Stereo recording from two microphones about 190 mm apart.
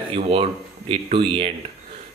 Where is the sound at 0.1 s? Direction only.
30° right (ahead or behind).